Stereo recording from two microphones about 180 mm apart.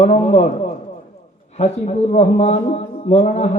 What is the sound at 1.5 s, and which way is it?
A man's voice, 40° left (ahead or behind).